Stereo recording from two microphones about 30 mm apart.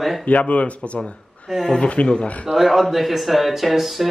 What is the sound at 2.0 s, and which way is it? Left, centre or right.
Speech, left.